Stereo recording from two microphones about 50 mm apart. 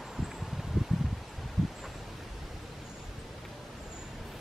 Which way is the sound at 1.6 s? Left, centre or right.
Centre.